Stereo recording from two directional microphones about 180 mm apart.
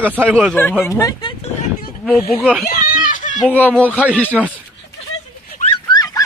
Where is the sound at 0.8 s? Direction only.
15° left (ahead or behind).